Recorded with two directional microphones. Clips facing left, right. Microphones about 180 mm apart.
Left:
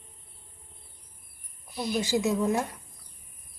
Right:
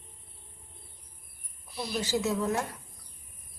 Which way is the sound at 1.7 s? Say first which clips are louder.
Left 3 dB; 15° left (ahead or behind).